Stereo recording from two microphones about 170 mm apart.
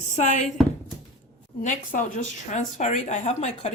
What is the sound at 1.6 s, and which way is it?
Speech, 45° left (ahead or behind).